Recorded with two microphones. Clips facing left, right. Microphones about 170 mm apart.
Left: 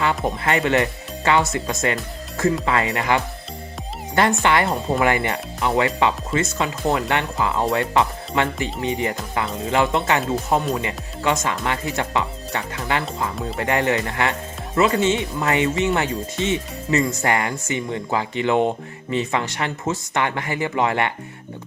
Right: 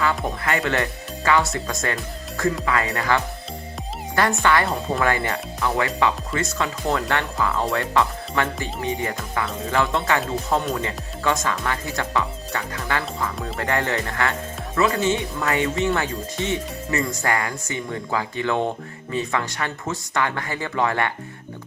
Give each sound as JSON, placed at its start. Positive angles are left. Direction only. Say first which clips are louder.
{"t": 0.4, "sound": "speech", "louder": "left 4 dB", "side_deg": 20}